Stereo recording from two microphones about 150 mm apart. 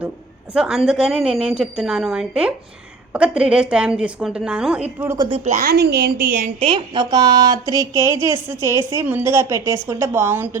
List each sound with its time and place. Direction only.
0.5 s a woman's voice: 5° right (ahead or behind)
5.1 s speech: 30° right (ahead or behind)
5.6 s a woman's voice: 90° right; by 6.5 s 75° right (ahead or behind)
6.6 s a woman's voice: 35° right (ahead or behind); by 10.6 s 15° right (ahead or behind)